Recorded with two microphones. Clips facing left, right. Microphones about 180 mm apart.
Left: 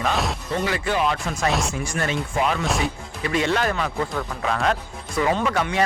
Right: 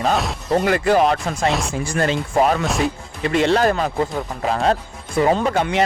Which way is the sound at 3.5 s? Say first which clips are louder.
Right 6 dB; 35° right (ahead or behind).